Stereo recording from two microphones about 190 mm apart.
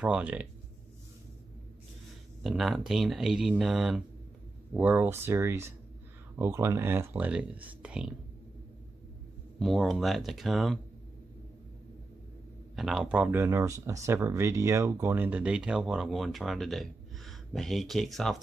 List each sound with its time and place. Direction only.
0.0 s speech: 5° right (ahead or behind)
2.4 s speech: centre (ahead or behind)
9.6 s speech: centre (ahead or behind)
12.7 s speech: centre (ahead or behind)